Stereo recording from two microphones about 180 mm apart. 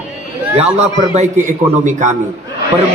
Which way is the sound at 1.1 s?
40° right (ahead or behind).